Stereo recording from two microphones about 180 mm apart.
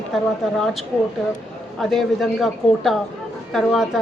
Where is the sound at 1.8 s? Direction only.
Centre (ahead or behind).